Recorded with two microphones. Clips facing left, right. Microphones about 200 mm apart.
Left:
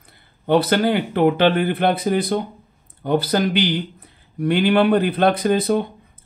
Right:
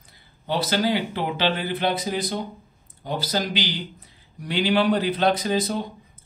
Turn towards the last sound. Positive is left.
turn(degrees=60)  # may be behind; listen again after turning